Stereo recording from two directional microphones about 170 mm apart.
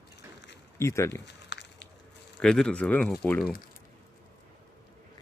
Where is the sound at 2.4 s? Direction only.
5° left (ahead or behind).